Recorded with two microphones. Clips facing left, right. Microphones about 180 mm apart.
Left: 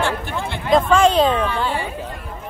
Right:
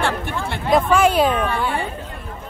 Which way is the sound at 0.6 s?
5° right (ahead or behind).